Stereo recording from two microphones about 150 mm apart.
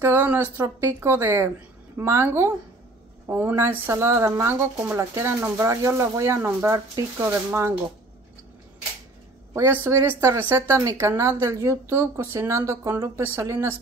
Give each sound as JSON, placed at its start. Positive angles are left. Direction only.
{"t": 0.0, "sound": "speech", "side_deg": -15}
{"t": 9.8, "sound": "a woman's voice", "side_deg": -20}